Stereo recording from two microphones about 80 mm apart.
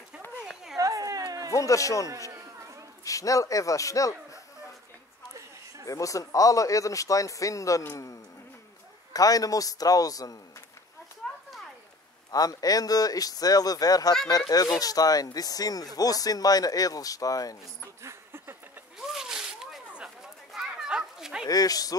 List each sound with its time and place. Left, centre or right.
0.7 s a sound: right
1.5 s speech: left
2.0 s a sound: right
3.0 s speech: left
5.9 s speech: left
9.1 s speech: left
12.3 s speech: left
18.0 s a sound: right
18.9 s zipper: centre
20.5 s dog: centre
21.5 s speech: left